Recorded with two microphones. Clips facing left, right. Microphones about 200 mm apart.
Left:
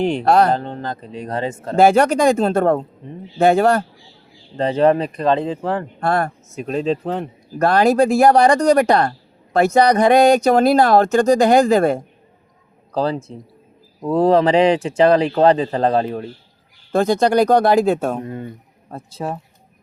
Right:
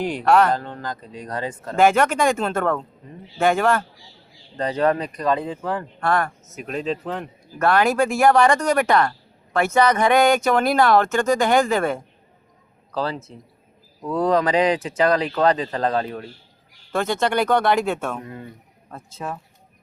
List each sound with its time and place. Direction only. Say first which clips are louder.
0.0 s speech: left 3 dB; 25° left (ahead or behind)